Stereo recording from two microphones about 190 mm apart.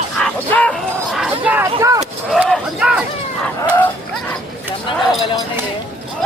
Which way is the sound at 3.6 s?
10° left (ahead or behind).